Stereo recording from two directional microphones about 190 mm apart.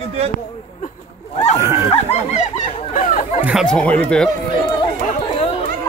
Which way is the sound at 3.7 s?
5° left (ahead or behind).